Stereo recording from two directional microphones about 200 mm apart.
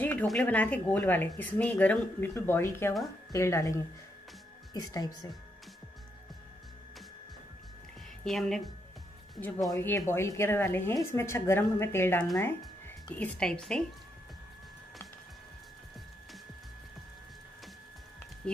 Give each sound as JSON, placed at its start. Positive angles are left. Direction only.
{"t": 0.0, "sound": "speech", "side_deg": 10}
{"t": 8.2, "sound": "a woman's voice", "side_deg": 0}
{"t": 9.7, "sound": "speech", "side_deg": 15}